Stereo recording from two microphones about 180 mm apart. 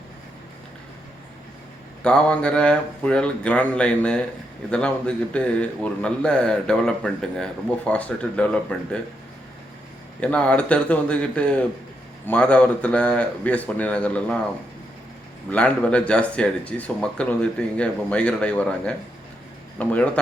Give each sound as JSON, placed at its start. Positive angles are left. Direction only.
{"t": 2.0, "sound": "a man's voice", "side_deg": 5}
{"t": 10.2, "sound": "speech", "side_deg": 5}
{"t": 15.4, "sound": "speech", "side_deg": 10}